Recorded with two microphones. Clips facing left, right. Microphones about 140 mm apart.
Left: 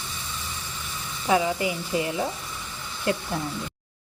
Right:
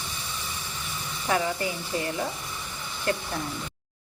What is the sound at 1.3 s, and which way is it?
A woman's voice, 15° left (ahead or behind).